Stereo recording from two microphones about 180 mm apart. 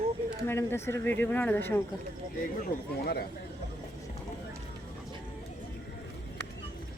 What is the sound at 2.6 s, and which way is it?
Speech, 60° left (ahead or behind).